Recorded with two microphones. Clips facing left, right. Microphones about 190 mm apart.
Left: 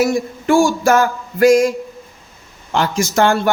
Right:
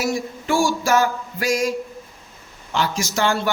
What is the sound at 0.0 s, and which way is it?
A man's voice, 55° left (ahead or behind).